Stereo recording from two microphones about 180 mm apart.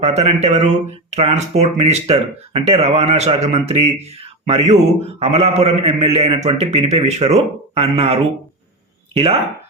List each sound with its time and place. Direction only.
0.0 s speech: 35° right (ahead or behind)